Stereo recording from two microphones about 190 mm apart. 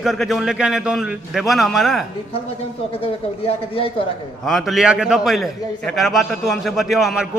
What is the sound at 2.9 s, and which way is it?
Speech, 30° left (ahead or behind).